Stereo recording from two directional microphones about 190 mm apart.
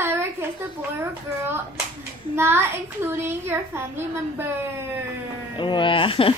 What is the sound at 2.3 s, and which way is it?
A child's voice, 10° right (ahead or behind).